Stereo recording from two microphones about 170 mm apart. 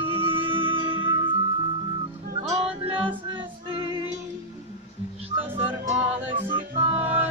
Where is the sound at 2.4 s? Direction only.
30° right (ahead or behind).